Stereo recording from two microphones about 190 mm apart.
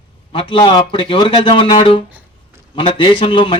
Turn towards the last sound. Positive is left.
turn(degrees=25)  # may be behind; listen again after turning